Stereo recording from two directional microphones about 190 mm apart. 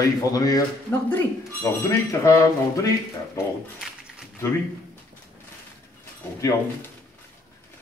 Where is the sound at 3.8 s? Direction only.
Centre (ahead or behind).